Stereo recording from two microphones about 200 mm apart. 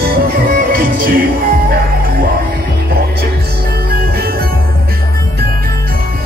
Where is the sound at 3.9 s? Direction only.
50° right (ahead or behind).